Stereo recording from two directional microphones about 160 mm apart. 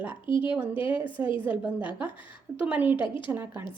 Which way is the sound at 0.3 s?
30° left (ahead or behind).